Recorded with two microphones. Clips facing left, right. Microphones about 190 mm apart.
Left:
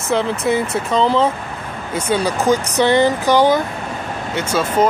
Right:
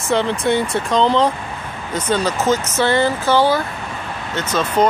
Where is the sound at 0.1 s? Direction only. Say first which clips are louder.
Even; centre (ahead or behind).